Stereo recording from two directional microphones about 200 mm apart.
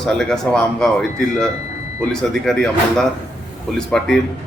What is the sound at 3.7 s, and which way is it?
Speech, 5° left (ahead or behind).